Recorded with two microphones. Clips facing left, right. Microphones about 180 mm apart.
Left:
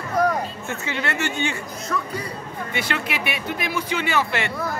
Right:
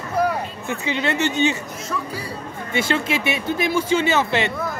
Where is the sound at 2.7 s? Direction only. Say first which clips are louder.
Right 6 dB; 25° right (ahead or behind).